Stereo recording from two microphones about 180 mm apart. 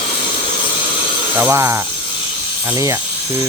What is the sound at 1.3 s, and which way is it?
Speech, 10° right (ahead or behind).